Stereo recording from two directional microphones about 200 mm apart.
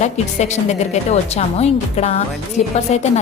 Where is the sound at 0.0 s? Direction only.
35° left (ahead or behind).